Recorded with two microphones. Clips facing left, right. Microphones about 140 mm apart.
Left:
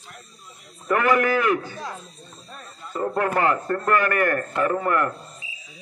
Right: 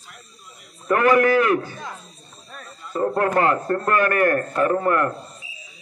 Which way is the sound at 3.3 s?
20° right (ahead or behind).